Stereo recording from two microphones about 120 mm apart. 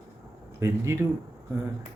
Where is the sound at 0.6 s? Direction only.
20° right (ahead or behind).